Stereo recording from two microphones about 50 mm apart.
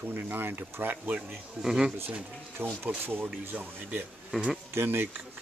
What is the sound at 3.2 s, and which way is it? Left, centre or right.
Speech, right.